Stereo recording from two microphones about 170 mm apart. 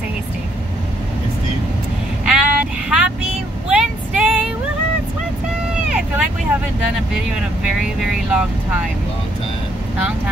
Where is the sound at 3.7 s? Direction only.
5° right (ahead or behind).